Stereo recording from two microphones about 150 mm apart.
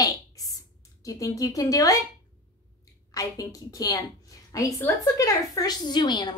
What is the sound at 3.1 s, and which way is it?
A woman's voice, 25° left (ahead or behind).